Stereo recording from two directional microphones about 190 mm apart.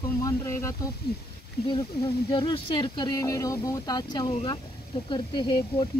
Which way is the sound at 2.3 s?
25° left (ahead or behind).